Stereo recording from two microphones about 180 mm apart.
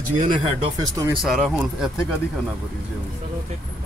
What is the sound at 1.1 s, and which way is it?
Speech, centre (ahead or behind).